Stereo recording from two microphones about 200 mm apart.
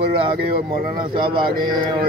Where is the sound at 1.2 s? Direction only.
25° right (ahead or behind).